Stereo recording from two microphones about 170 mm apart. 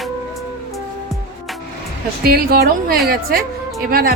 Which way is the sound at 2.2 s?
60° right (ahead or behind).